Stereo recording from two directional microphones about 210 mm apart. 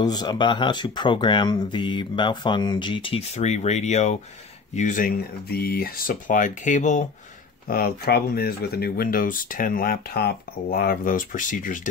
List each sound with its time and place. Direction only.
0.0 s speech: 20° left (ahead or behind); by 11.9 s 40° left (ahead or behind)